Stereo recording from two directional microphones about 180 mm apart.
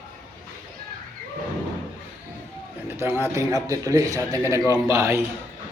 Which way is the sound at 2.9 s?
15° right (ahead or behind).